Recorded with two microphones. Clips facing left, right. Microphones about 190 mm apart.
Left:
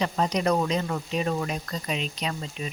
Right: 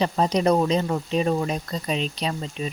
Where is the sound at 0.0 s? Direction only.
30° right (ahead or behind).